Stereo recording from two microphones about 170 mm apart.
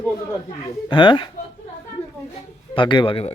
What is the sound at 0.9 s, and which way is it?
Speech, 30° left (ahead or behind).